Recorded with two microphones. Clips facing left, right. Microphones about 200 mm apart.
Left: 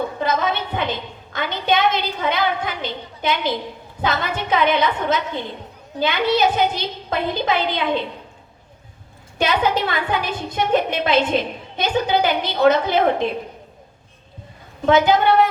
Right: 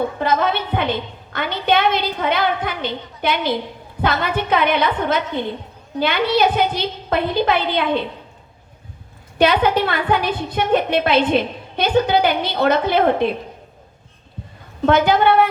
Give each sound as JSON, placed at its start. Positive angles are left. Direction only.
{"t": 0.2, "sound": "a woman's voice", "side_deg": -60}
{"t": 9.4, "sound": "a woman's voice", "side_deg": -60}
{"t": 14.8, "sound": "a woman's voice", "side_deg": -55}